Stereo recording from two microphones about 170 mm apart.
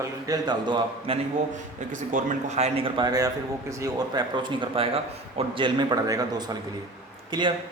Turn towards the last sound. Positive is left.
turn(degrees=-25)  # may be behind; listen again after turning